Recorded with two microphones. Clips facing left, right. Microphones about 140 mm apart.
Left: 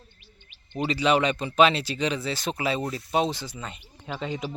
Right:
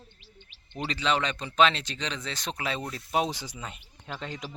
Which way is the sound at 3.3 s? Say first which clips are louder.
Left 3 dB; 10° right (ahead or behind).